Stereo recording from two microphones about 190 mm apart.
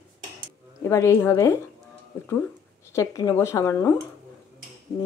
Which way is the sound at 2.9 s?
15° left (ahead or behind).